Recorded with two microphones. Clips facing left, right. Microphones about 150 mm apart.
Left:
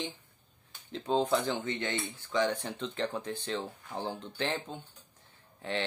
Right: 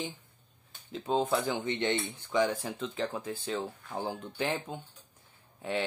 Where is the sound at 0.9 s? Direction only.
5° right (ahead or behind).